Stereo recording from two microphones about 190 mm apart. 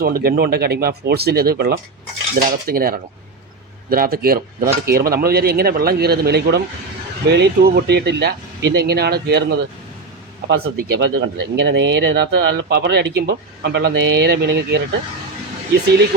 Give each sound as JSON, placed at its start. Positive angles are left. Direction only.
{"t": 0.0, "sound": "speech", "side_deg": -50}
{"t": 10.5, "sound": "speech", "side_deg": -60}